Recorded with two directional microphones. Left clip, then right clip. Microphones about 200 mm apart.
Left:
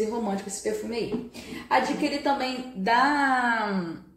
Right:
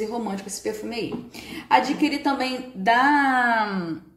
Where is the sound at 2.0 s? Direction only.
50° right (ahead or behind).